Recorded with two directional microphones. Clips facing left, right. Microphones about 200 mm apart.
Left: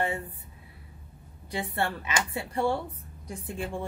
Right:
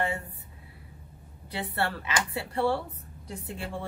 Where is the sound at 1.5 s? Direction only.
15° left (ahead or behind).